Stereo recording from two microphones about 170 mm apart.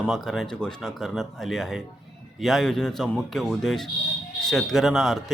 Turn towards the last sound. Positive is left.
turn(degrees=0)  # may be behind; listen again after turning